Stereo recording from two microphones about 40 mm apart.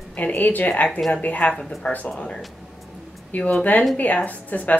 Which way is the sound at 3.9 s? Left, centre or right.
Left.